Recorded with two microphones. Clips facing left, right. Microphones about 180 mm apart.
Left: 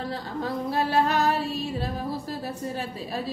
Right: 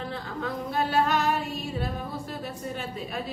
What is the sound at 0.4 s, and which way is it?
Female singing, 35° left (ahead or behind).